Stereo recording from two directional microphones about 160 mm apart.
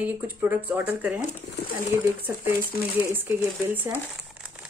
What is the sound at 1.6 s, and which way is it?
Speech, 90° left.